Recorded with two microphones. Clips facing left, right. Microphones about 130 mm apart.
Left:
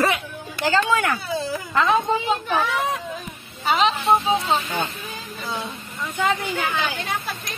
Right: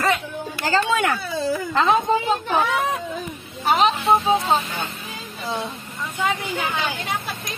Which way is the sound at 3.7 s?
50° right (ahead or behind).